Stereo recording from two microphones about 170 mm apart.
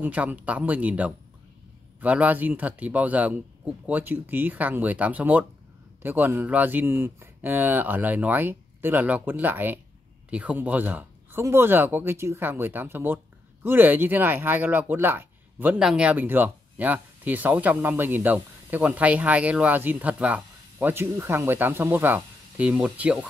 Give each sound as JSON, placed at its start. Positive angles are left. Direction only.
{"t": 0.0, "sound": "speech", "side_deg": -10}